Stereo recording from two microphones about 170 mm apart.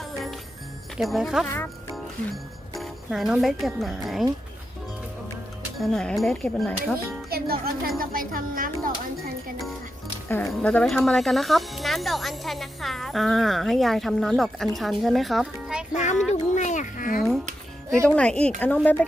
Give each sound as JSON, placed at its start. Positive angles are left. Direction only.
{"t": 0.0, "sound": "music", "side_deg": 0}
{"t": 0.9, "sound": "speech", "side_deg": 0}
{"t": 5.7, "sound": "speech", "side_deg": 0}
{"t": 7.3, "sound": "music", "side_deg": -65}
{"t": 10.2, "sound": "speech", "side_deg": 15}
{"t": 16.0, "sound": "speech", "side_deg": 45}
{"t": 16.3, "sound": "a sound", "side_deg": 45}
{"t": 17.8, "sound": "music", "side_deg": -15}
{"t": 18.1, "sound": "speech", "side_deg": 5}